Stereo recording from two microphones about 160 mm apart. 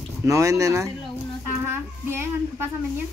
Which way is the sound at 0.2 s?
20° right (ahead or behind).